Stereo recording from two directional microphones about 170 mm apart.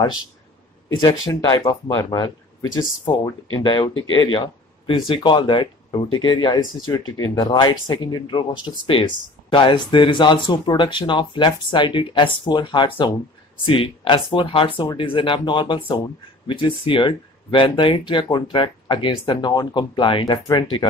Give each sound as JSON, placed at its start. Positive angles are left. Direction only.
{"t": 0.9, "sound": "speech", "side_deg": 25}